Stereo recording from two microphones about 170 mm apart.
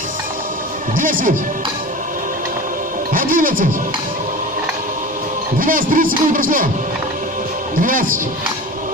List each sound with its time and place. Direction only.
0.9 s speech: 55° right (ahead or behind)
3.1 s speech: 55° right (ahead or behind)
5.6 s speech: 55° right (ahead or behind)
7.8 s speech: 55° right (ahead or behind)